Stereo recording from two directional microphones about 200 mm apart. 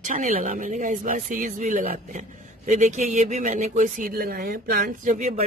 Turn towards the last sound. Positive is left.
turn(degrees=-40)  # may be behind; listen again after turning